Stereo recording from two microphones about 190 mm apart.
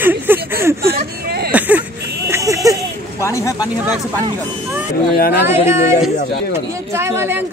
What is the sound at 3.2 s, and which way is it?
Speech, 15° left (ahead or behind).